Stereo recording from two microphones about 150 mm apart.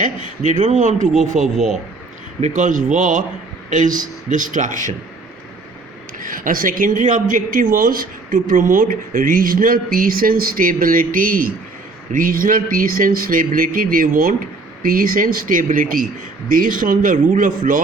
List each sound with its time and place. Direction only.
0.0 s a man's voice: 55° right (ahead or behind)
6.1 s speech: 65° right (ahead or behind)